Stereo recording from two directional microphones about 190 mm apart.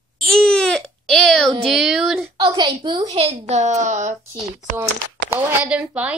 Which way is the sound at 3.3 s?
35° right (ahead or behind).